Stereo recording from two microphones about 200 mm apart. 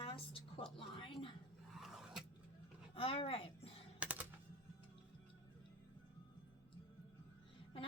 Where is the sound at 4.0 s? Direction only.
5° right (ahead or behind).